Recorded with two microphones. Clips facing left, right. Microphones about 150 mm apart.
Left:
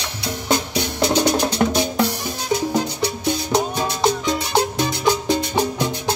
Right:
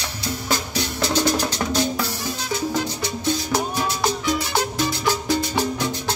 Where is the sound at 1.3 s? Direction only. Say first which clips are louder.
Left 4 dB; 60° left (ahead or behind).